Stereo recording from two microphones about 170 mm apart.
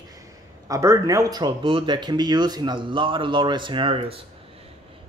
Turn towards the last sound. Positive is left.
turn(degrees=-30)  # may be behind; listen again after turning